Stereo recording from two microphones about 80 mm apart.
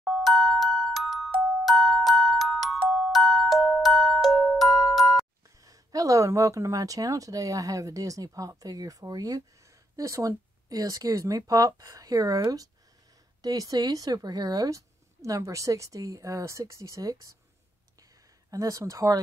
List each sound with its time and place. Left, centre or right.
0.0 s glockenspiel: centre
5.6 s speech: right
13.4 s speech: right
18.5 s speech: right